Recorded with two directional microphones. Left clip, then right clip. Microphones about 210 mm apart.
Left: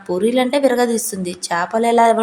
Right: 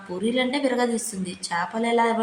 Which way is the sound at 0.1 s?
35° left (ahead or behind).